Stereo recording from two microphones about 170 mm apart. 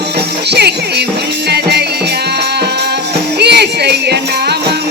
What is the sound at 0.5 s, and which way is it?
Music, 75° right (ahead or behind).